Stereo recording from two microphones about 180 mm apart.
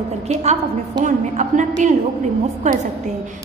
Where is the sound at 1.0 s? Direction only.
45° right (ahead or behind).